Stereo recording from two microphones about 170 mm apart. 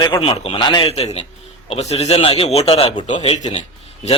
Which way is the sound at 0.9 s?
40° left (ahead or behind).